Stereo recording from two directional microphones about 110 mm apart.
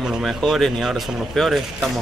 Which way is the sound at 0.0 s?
Centre (ahead or behind).